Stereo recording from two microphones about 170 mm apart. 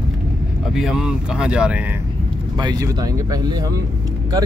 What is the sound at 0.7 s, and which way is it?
Speech, 5° right (ahead or behind).